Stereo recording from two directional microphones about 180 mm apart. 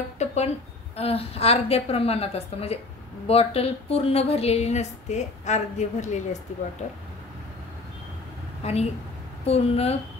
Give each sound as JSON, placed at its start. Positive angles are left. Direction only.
{"t": 0.2, "sound": "a sound", "side_deg": 40}
{"t": 0.9, "sound": "speech", "side_deg": 35}
{"t": 8.6, "sound": "speech", "side_deg": 35}